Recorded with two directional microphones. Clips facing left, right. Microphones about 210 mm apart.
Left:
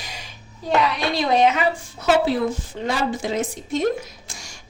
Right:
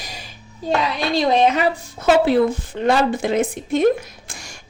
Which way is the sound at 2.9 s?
60° right (ahead or behind).